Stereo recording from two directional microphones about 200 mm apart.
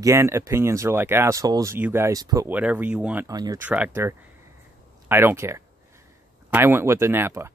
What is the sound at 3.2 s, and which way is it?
Speech, 20° right (ahead or behind).